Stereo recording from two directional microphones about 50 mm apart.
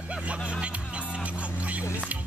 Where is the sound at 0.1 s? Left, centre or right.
Right.